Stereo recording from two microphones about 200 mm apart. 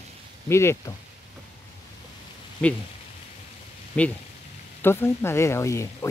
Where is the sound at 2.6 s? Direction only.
5° left (ahead or behind).